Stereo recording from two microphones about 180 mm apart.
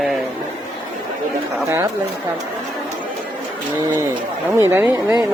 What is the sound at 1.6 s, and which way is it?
Speech, 15° right (ahead or behind).